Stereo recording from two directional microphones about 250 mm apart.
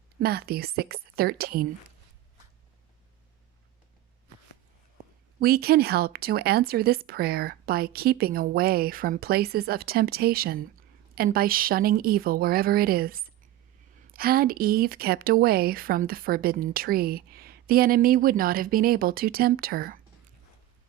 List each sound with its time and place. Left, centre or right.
0.2 s speech: right
5.4 s speech: right